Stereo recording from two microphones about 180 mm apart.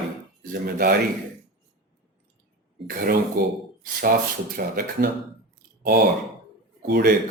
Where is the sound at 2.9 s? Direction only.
55° right (ahead or behind).